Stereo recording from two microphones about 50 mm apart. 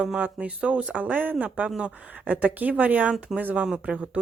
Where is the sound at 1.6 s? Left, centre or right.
Centre.